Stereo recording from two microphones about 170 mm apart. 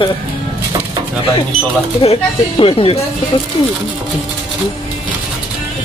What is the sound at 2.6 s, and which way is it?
Speech, 35° left (ahead or behind).